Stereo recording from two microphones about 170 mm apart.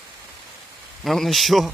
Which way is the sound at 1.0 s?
Centre (ahead or behind).